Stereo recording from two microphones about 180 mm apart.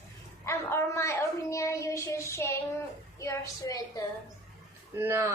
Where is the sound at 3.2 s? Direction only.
20° left (ahead or behind).